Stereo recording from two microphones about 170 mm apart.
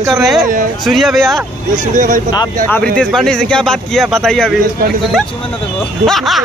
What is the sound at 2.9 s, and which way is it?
Speech, 5° left (ahead or behind).